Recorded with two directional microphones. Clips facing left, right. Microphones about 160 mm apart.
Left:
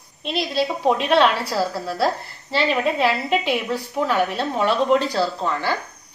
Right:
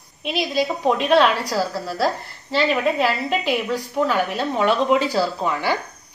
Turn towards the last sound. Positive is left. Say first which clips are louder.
# right 1 dB
turn(degrees=-10)  # may be behind; listen again after turning